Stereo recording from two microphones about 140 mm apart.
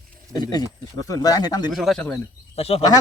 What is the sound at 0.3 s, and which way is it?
A man's voice, 25° left (ahead or behind).